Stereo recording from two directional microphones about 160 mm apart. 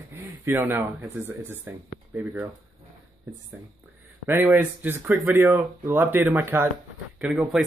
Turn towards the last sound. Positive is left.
turn(degrees=-5)  # may be behind; listen again after turning